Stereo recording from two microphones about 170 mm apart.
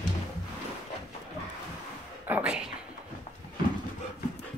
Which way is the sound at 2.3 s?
5° right (ahead or behind).